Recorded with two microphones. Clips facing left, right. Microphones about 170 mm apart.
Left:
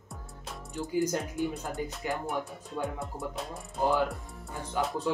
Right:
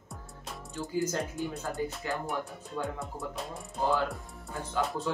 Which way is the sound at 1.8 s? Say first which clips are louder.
Right 3 dB; 15° left (ahead or behind).